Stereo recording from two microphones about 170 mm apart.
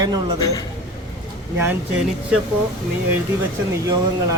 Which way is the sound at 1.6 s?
10° right (ahead or behind).